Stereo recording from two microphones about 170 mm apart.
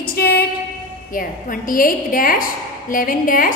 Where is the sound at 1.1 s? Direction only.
55° left (ahead or behind).